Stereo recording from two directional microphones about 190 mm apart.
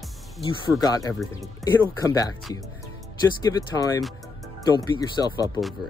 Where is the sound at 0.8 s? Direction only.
20° left (ahead or behind).